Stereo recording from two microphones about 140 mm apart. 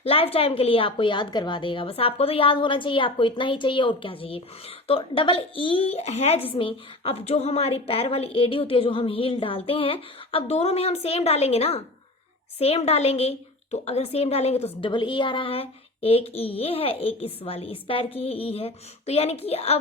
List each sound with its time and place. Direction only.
0.0 s a woman's voice: 45° left (ahead or behind)